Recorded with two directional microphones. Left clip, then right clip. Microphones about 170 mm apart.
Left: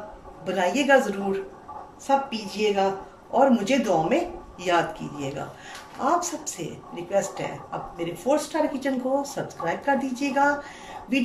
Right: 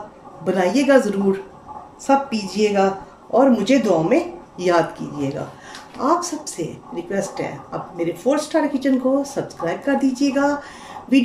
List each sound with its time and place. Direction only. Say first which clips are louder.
0.4 s speech: right 5 dB; 30° right (ahead or behind)